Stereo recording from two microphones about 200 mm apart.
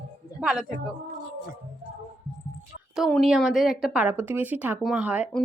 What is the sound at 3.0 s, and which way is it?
A woman's voice, centre (ahead or behind).